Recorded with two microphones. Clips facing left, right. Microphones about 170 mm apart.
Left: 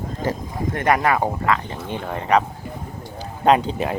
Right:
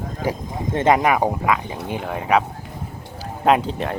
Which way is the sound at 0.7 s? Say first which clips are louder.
Right 3 dB; 20° right (ahead or behind).